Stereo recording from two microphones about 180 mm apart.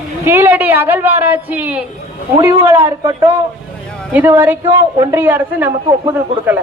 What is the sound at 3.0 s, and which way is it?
Speech, 25° right (ahead or behind).